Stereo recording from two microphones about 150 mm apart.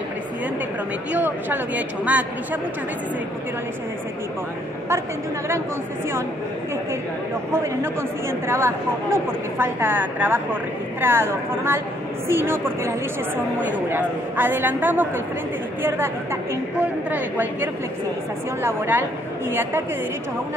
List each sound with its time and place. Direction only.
1.1 s speech: 10° right (ahead or behind)
7.5 s speech: 15° right (ahead or behind)
17.1 s speech: 10° right (ahead or behind)